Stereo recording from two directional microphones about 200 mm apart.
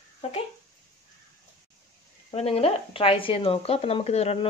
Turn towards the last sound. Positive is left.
turn(degrees=30)  # may be behind; listen again after turning